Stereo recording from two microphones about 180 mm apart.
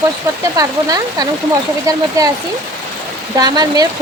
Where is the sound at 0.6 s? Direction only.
20° right (ahead or behind).